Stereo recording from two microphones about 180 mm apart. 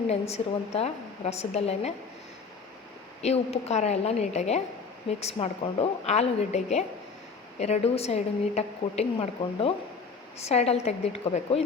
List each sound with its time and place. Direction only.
0.1 s a woman's voice: 35° left (ahead or behind)
3.2 s a woman's voice: 35° left (ahead or behind)